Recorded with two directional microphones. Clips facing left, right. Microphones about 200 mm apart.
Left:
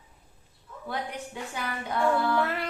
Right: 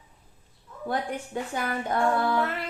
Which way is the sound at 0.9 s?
50° right (ahead or behind).